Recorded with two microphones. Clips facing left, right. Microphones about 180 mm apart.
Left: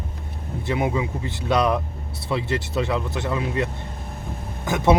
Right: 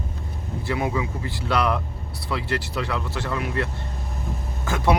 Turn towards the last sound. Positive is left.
turn(degrees=20)  # may be behind; listen again after turning